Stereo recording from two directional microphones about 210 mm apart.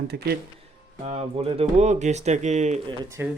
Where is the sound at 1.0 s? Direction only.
30° right (ahead or behind).